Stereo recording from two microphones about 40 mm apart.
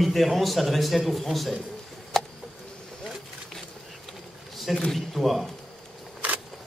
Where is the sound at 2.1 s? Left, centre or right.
Centre.